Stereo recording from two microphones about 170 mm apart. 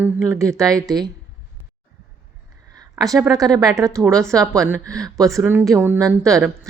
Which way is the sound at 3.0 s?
20° right (ahead or behind).